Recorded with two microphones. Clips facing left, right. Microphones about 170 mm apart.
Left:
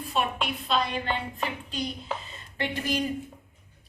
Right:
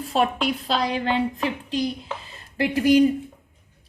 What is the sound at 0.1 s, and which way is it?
Speech, 90° right.